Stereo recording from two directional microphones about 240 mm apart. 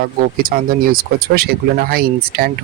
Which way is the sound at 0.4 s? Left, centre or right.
Right.